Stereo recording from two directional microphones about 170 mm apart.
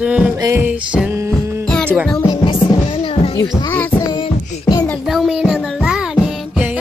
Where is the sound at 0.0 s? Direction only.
5° right (ahead or behind).